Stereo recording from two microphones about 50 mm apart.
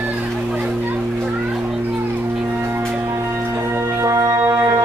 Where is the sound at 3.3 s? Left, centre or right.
Right.